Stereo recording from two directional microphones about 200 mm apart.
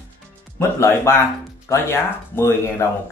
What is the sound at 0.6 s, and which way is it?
Speech, 15° left (ahead or behind).